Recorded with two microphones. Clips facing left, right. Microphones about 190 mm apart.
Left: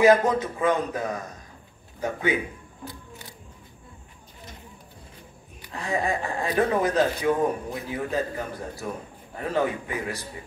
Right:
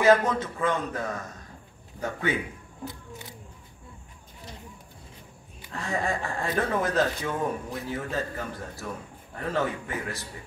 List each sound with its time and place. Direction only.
0.0 s a man's voice: 15° left (ahead or behind)
5.7 s speech: 15° left (ahead or behind)